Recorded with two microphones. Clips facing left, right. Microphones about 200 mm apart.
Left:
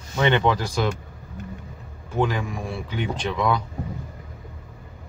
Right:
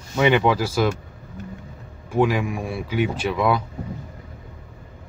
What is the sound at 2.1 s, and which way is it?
Speech, 10° right (ahead or behind).